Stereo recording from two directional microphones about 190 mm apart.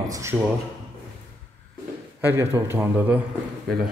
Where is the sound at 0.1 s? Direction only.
15° right (ahead or behind).